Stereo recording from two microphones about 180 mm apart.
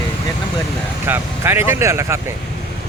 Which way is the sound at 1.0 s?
10° right (ahead or behind).